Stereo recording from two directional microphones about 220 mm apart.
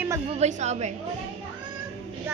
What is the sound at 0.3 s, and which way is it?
Speech, 30° right (ahead or behind).